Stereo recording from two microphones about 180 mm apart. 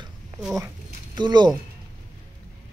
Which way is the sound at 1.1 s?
25° right (ahead or behind).